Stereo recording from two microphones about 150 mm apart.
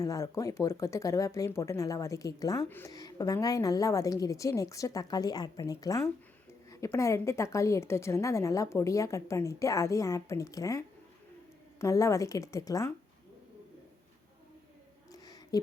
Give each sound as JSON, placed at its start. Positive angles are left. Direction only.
{"t": 0.0, "sound": "a woman's voice", "side_deg": 20}
{"t": 2.6, "sound": "speech", "side_deg": 15}
{"t": 2.9, "sound": "a woman's voice", "side_deg": 25}
{"t": 15.1, "sound": "a sound", "side_deg": 25}